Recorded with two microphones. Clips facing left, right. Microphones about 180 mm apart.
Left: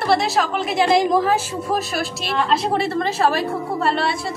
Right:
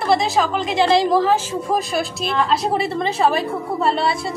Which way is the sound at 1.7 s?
Centre (ahead or behind).